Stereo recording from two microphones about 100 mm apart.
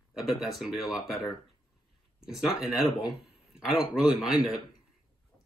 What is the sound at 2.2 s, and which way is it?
A man's voice, 5° right (ahead or behind).